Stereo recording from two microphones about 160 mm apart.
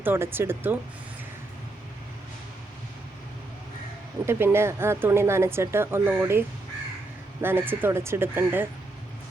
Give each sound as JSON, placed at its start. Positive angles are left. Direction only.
{"t": 0.0, "sound": "speech", "side_deg": -15}
{"t": 4.3, "sound": "speech", "side_deg": -15}
{"t": 7.4, "sound": "speech", "side_deg": -15}